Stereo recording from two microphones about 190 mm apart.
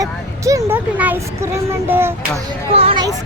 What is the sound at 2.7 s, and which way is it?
Speech, 30° right (ahead or behind).